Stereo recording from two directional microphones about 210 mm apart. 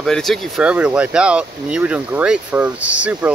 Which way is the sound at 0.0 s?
Centre (ahead or behind).